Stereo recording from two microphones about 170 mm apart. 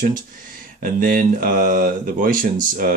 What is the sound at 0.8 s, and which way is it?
Speech, 55° right (ahead or behind).